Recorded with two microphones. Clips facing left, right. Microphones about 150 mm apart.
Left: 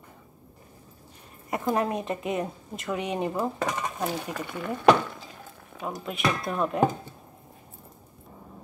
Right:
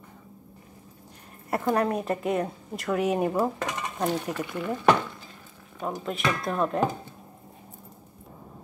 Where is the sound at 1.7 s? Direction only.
5° left (ahead or behind).